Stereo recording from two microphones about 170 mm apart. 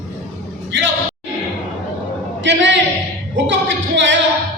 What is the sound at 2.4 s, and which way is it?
A man's voice, 90° right.